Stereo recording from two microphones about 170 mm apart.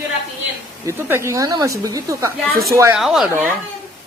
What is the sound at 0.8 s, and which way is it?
A woman's voice, 15° right (ahead or behind).